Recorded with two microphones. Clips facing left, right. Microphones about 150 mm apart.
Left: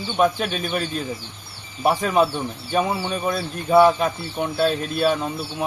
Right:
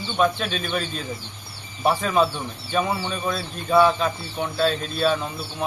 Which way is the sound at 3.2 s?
20° left (ahead or behind).